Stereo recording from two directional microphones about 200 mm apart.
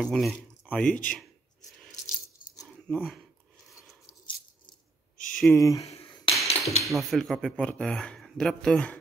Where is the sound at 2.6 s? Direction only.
Centre (ahead or behind).